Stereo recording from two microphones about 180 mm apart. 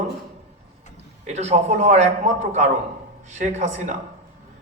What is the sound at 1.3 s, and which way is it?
A man's voice, 40° right (ahead or behind).